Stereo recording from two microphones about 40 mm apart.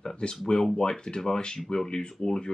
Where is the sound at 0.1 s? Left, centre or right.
Left.